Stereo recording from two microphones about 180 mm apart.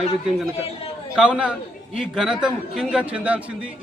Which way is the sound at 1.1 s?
5° right (ahead or behind).